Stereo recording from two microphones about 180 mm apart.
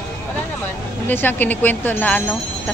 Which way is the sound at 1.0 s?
10° left (ahead or behind).